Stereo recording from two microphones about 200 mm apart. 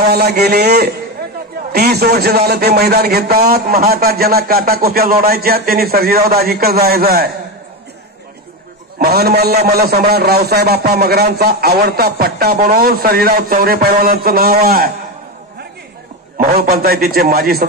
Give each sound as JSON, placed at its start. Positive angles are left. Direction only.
{"t": 0.1, "sound": "a man's voice", "side_deg": -55}
{"t": 8.9, "sound": "a man's voice", "side_deg": -50}
{"t": 16.3, "sound": "a man's voice", "side_deg": -50}